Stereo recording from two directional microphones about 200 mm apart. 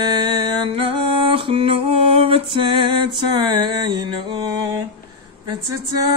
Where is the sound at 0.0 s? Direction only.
25° right (ahead or behind).